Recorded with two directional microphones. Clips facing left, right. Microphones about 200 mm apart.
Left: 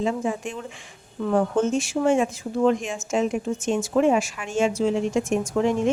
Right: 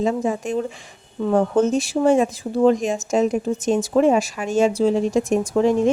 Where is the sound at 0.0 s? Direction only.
40° right (ahead or behind).